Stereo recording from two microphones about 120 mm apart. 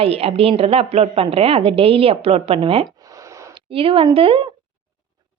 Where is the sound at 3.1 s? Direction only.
25° right (ahead or behind).